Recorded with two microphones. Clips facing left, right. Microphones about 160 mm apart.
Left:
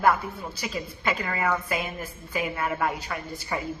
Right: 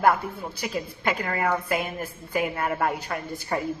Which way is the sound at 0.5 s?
55° right (ahead or behind).